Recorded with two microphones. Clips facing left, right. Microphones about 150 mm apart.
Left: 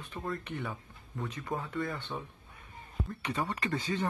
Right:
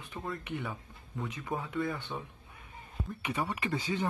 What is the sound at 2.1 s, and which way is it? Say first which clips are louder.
Speech: even; 5° right (ahead or behind).